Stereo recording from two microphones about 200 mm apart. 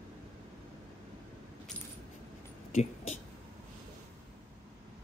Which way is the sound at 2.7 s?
35° left (ahead or behind).